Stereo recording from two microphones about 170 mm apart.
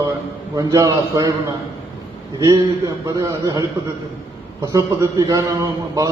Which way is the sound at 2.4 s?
20° right (ahead or behind).